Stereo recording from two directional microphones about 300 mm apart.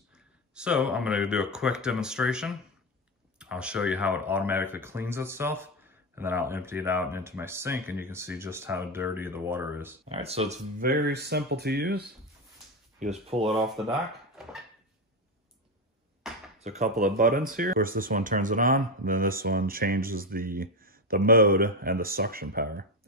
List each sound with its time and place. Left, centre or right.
0.6 s speech: centre
10.0 s speech: centre
13.5 s speech: centre
16.5 s speech: right